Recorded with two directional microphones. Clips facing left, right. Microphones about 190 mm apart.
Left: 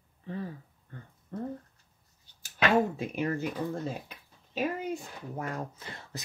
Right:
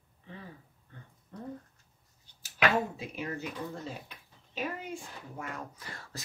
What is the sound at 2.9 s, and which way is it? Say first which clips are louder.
Speech: left 7 dB; 55° left (ahead or behind).